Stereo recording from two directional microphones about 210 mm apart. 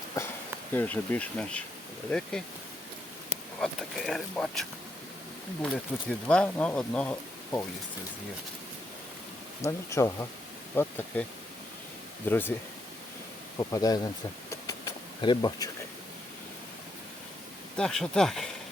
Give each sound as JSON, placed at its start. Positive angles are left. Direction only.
{"t": 0.7, "sound": "bee", "side_deg": 10}
{"t": 2.0, "sound": "speech", "side_deg": 5}
{"t": 3.6, "sound": "speech", "side_deg": 0}
{"t": 5.6, "sound": "speech", "side_deg": 5}
{"t": 9.6, "sound": "bee", "side_deg": 15}
{"t": 12.3, "sound": "bee", "side_deg": 10}
{"t": 13.6, "sound": "bee", "side_deg": 15}
{"t": 14.5, "sound": "insect", "side_deg": 15}
{"t": 17.7, "sound": "speech", "side_deg": 0}